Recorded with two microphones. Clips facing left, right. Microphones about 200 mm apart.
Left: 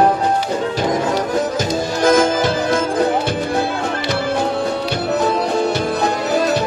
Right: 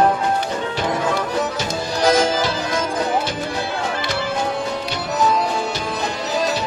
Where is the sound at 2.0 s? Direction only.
50° left (ahead or behind).